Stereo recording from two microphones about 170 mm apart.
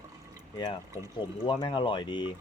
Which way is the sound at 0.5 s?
25° left (ahead or behind).